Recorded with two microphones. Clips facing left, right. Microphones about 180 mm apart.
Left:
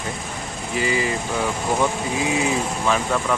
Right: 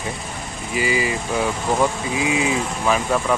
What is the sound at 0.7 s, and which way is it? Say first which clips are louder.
Speech: right 1 dB; 10° right (ahead or behind).